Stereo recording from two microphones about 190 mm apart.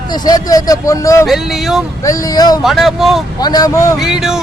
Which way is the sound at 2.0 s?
20° left (ahead or behind).